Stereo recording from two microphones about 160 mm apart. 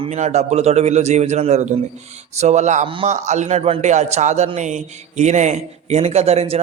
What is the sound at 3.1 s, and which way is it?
A man's voice, 45° right (ahead or behind).